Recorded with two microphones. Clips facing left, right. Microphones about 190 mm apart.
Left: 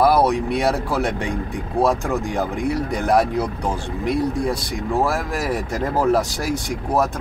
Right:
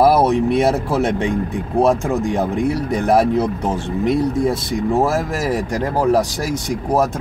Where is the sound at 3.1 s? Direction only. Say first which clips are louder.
Right 4 dB; 20° right (ahead or behind).